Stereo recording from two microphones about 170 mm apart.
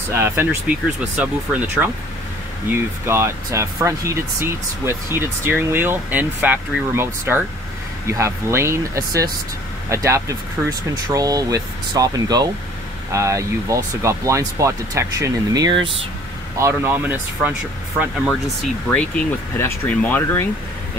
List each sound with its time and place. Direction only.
0.1 s speech: 15° right (ahead or behind)
3.1 s speech: 15° right (ahead or behind)
16.5 s speech: 15° right (ahead or behind)
18.9 s speech: 10° left (ahead or behind)